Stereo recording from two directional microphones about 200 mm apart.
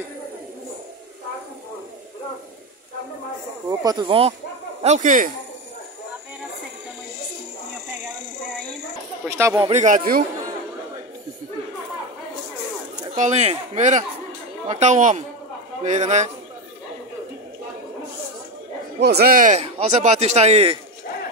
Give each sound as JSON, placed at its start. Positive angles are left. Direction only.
{"t": 3.6, "sound": "speech", "side_deg": -20}
{"t": 4.8, "sound": "speech", "side_deg": -40}
{"t": 9.2, "sound": "speech", "side_deg": -10}
{"t": 9.7, "sound": "speech", "side_deg": -35}
{"t": 13.1, "sound": "speech", "side_deg": -35}
{"t": 18.9, "sound": "speech", "side_deg": -55}